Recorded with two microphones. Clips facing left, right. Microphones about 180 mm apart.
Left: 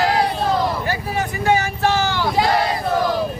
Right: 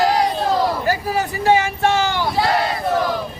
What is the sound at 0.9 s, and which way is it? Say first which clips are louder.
Speech: right 3 dB; 40° right (ahead or behind).